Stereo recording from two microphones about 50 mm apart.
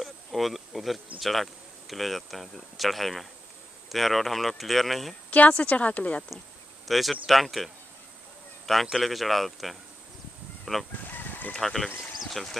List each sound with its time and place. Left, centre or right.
0.0 s speech: centre
5.3 s speech: left
6.9 s speech: centre
8.9 s speech: centre
10.6 s fowl: centre
11.1 s chicken: left
11.5 s speech: centre